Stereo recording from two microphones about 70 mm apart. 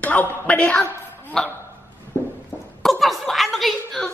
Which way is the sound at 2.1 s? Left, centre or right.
Left.